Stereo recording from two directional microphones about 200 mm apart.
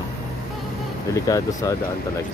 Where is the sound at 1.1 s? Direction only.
15° left (ahead or behind).